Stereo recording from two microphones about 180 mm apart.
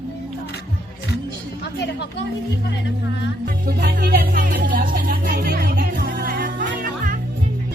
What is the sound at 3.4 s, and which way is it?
Music, 50° right (ahead or behind).